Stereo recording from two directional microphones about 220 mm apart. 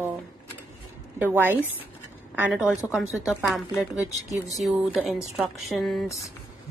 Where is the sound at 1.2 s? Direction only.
10° right (ahead or behind).